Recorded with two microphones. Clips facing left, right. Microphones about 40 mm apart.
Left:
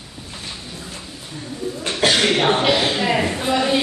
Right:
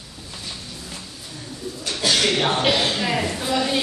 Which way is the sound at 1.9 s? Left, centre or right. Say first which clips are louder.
Left 3 dB; left.